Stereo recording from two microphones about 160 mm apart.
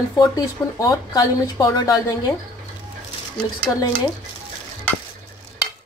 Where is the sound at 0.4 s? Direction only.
25° left (ahead or behind).